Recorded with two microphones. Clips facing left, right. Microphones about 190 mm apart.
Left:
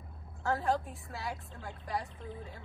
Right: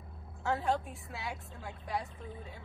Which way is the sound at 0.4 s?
Centre (ahead or behind).